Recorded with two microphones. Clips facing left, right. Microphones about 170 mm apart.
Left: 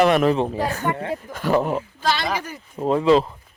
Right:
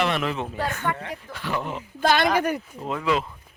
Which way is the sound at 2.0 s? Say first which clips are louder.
Right 6 dB; 55° right (ahead or behind).